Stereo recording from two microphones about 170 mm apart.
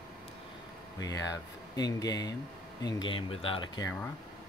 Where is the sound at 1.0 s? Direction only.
20° left (ahead or behind).